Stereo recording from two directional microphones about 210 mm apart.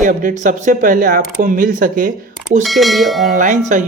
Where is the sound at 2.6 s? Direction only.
Centre (ahead or behind).